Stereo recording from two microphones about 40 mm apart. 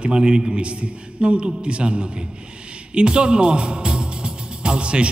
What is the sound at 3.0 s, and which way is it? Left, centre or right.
Music, right.